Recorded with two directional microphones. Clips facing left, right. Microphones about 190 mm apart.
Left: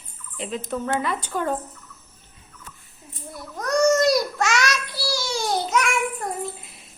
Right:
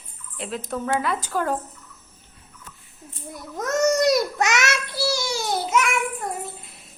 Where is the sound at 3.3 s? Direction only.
20° right (ahead or behind).